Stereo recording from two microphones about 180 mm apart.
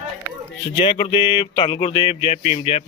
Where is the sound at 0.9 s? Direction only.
30° left (ahead or behind).